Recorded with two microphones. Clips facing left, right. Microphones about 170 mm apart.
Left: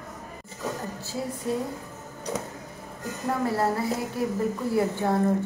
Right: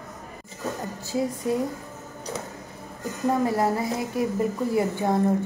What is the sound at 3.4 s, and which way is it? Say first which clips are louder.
Speech: right 2 dB; 15° right (ahead or behind).